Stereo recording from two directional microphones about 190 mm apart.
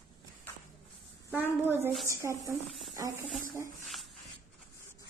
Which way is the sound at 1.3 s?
10° right (ahead or behind).